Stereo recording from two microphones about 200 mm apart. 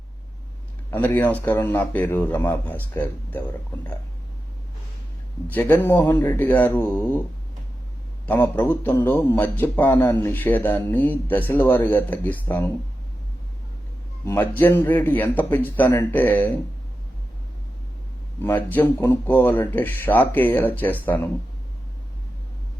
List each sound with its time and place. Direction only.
0.9 s a man's voice: 10° left (ahead or behind)
5.5 s a man's voice: 10° left (ahead or behind)
8.3 s a man's voice: 10° left (ahead or behind)
14.3 s a man's voice: 10° left (ahead or behind)
18.4 s a man's voice: 10° left (ahead or behind)